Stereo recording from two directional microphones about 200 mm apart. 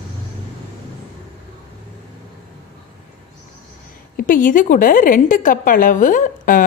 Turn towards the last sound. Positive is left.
turn(degrees=40)  # may be behind; listen again after turning